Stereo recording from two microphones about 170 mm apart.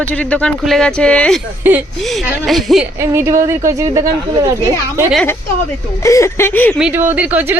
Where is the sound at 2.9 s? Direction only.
15° right (ahead or behind).